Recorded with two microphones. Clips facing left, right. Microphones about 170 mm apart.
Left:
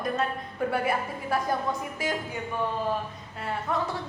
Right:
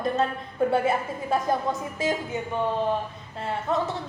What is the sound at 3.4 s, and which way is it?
Speech, 25° right (ahead or behind).